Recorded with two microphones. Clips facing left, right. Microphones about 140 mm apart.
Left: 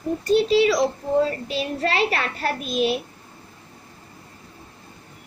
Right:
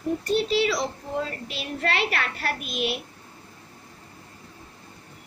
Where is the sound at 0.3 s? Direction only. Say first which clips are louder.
Left 7 dB; 40° left (ahead or behind).